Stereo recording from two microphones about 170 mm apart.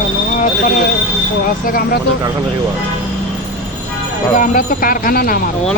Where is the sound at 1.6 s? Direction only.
55° left (ahead or behind).